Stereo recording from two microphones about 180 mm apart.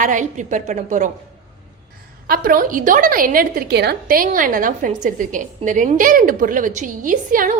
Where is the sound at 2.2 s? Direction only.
55° right (ahead or behind).